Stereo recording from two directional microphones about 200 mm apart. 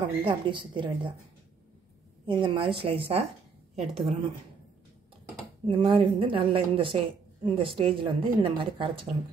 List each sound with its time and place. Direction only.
0.2 s speech: 25° right (ahead or behind)
2.2 s speech: 25° right (ahead or behind)
5.7 s speech: 25° right (ahead or behind)